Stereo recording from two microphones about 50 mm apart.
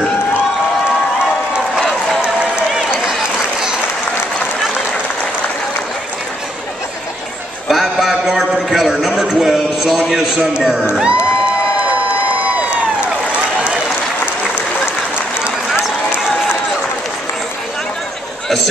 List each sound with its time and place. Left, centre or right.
2.2 s run: centre
7.6 s music: centre
8.6 s a sound: centre
10.8 s speech: right